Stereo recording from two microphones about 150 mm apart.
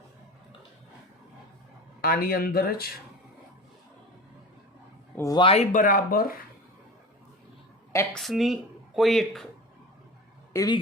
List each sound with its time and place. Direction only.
2.0 s speech: 80° left
5.1 s speech: 20° left (ahead or behind)
5.4 s speech: 40° left (ahead or behind)
5.7 s speech: 65° left (ahead or behind)
8.1 s speech: centre (ahead or behind)
10.5 s speech: 20° left (ahead or behind)